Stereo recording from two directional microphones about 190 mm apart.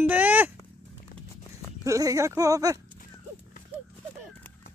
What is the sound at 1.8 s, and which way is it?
Speech, 15° right (ahead or behind).